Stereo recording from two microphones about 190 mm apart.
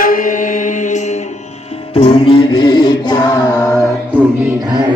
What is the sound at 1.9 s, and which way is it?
Music, 30° left (ahead or behind).